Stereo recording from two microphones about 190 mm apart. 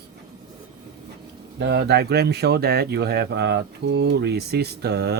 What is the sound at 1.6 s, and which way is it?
Speech, 60° right (ahead or behind).